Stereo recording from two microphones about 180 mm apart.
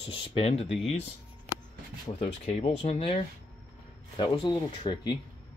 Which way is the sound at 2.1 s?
35° left (ahead or behind).